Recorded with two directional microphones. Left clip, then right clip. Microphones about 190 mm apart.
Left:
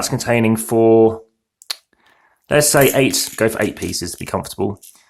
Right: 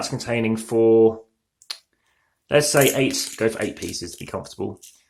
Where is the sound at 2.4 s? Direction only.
25° left (ahead or behind).